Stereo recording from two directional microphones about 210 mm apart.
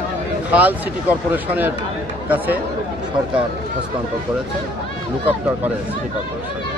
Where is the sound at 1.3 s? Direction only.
10° right (ahead or behind).